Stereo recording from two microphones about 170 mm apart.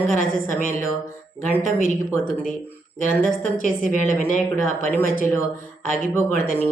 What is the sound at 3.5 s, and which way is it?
Speech, 50° left (ahead or behind).